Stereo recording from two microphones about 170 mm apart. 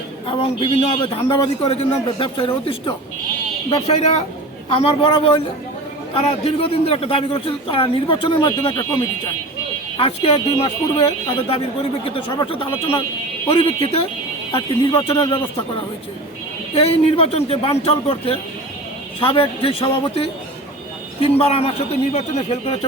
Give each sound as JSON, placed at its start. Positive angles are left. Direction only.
{"t": 0.3, "sound": "a man's voice", "side_deg": 30}
{"t": 16.7, "sound": "a man's voice", "side_deg": 35}